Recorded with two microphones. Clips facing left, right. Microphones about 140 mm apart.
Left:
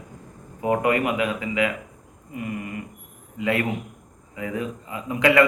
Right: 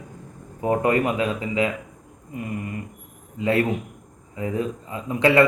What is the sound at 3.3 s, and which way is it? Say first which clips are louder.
Speech: right 3 dB; 30° right (ahead or behind).